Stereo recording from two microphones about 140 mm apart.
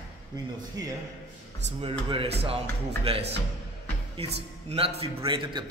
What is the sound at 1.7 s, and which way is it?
A man's voice, 45° right (ahead or behind).